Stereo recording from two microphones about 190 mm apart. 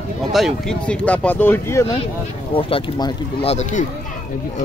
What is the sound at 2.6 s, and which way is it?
Speech, 30° left (ahead or behind).